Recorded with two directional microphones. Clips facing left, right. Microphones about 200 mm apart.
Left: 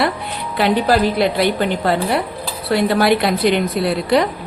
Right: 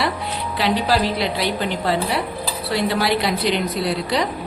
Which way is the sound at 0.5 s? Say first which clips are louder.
Left 5 dB; 55° left (ahead or behind).